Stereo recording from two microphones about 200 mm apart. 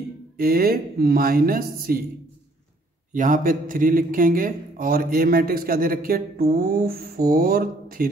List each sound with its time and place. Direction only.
0.4 s a man's voice: 50° right (ahead or behind)
3.1 s a man's voice: 40° right (ahead or behind)